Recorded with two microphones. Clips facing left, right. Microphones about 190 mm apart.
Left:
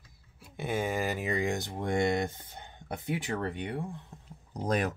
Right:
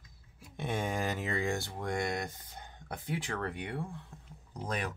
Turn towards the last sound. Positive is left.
turn(degrees=40)  # may be behind; listen again after turning